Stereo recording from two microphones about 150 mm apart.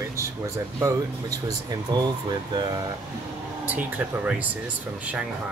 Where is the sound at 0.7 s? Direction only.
20° right (ahead or behind).